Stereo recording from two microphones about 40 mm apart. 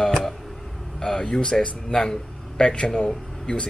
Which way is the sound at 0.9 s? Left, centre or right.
Centre.